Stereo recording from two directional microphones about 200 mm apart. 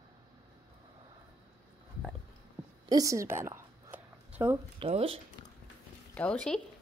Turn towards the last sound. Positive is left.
turn(degrees=5)  # may be behind; listen again after turning